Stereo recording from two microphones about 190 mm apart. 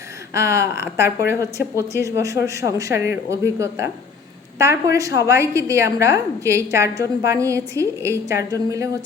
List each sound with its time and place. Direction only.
0.3 s a woman's voice: 15° right (ahead or behind)
2.9 s speech: 60° left (ahead or behind)
3.2 s a woman's voice: 15° right (ahead or behind)
4.9 s a woman's voice: 15° right (ahead or behind)